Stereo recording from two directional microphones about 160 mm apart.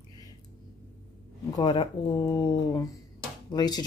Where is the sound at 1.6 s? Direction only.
30° left (ahead or behind).